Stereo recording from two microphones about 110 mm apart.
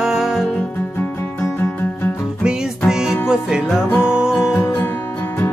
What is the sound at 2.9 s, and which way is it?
Music, 5° right (ahead or behind).